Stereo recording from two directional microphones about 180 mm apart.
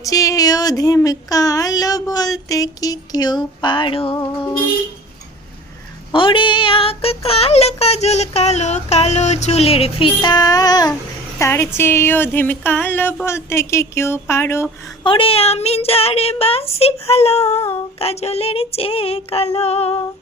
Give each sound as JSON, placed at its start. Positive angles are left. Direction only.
{"t": 0.0, "sound": "speech", "side_deg": 20}
{"t": 6.1, "sound": "child singing", "side_deg": 30}
{"t": 11.3, "sound": "a sound", "side_deg": 15}
{"t": 15.0, "sound": "child singing", "side_deg": 30}